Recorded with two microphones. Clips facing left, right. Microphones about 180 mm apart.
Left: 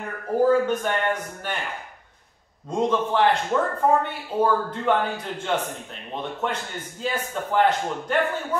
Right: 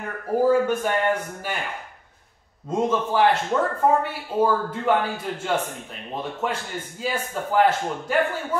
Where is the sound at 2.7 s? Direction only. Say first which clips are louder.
Even; 5° right (ahead or behind).